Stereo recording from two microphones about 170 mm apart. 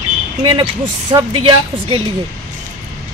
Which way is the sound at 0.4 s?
30° right (ahead or behind).